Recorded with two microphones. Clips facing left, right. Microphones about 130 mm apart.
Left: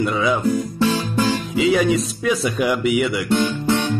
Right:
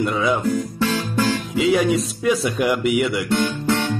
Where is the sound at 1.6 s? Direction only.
Centre (ahead or behind).